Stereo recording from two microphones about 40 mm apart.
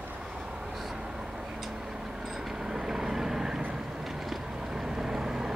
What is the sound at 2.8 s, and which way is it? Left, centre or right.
Vehicle, centre.